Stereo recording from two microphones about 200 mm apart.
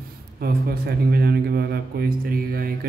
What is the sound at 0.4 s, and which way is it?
A man's voice, 50° right (ahead or behind).